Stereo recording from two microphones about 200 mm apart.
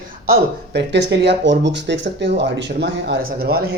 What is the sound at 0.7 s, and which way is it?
Speech, 60° right (ahead or behind).